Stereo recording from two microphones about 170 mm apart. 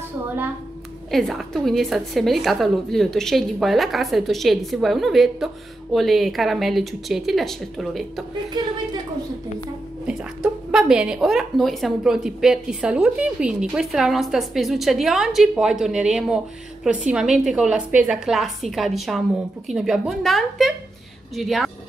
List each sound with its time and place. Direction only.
1.1 s speech: centre (ahead or behind)
8.6 s a woman's voice: 25° right (ahead or behind)
10.0 s speech: 5° right (ahead or behind)